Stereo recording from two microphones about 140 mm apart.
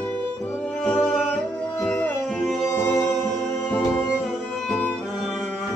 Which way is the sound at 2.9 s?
10° left (ahead or behind).